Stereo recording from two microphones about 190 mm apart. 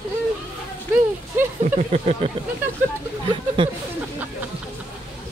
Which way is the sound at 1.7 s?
40° right (ahead or behind).